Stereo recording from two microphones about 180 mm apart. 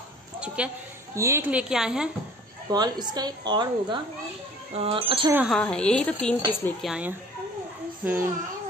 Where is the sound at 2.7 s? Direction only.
25° right (ahead or behind).